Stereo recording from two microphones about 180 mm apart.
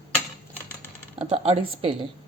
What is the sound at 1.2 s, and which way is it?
Speech, 30° right (ahead or behind).